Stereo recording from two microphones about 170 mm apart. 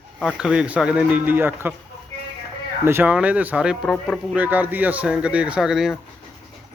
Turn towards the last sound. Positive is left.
turn(degrees=-5)  # may be behind; listen again after turning